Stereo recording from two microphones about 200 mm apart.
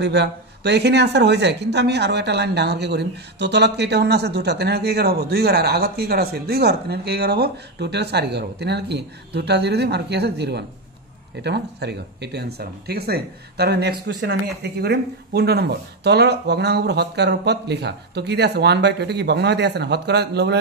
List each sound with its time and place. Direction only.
0.0 s speech: 60° right (ahead or behind)